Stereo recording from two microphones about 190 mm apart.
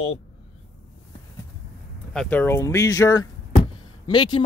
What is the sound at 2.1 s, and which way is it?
Speech, 10° left (ahead or behind).